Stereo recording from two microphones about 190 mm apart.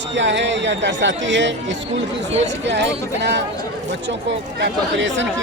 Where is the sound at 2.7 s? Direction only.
65° right (ahead or behind).